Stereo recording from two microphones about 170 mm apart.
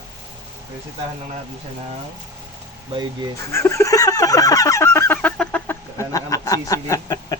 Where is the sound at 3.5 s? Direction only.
15° left (ahead or behind).